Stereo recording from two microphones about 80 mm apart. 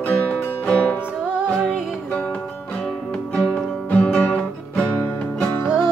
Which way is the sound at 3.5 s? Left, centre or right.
Centre.